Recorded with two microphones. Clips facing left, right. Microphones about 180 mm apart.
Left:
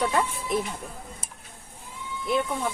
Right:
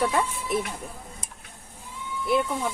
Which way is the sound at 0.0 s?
Centre (ahead or behind).